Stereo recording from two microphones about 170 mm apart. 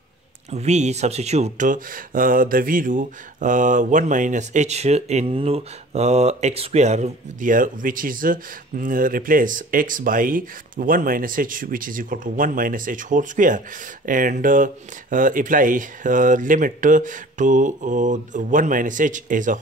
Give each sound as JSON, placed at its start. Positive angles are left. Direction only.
{"t": 0.5, "sound": "speech", "side_deg": -40}